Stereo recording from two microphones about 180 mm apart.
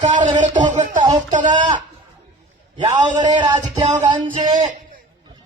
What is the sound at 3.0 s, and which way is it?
Speech, 45° right (ahead or behind).